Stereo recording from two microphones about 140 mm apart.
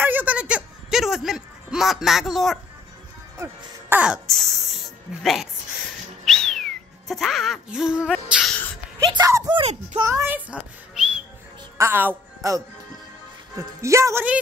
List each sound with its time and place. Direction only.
0.0 s a sound: 15° right (ahead or behind)
3.9 s speech: 5° right (ahead or behind)
6.2 s cat: centre (ahead or behind)
9.1 s speech: 30° right (ahead or behind)
9.6 s a child's voice: 40° right (ahead or behind)
10.0 s a woman's voice: 15° right (ahead or behind)
13.7 s speech: 20° right (ahead or behind)